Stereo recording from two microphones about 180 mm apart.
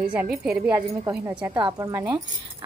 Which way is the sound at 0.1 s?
5° right (ahead or behind).